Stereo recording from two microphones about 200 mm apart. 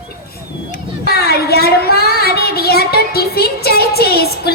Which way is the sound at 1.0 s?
50° left (ahead or behind).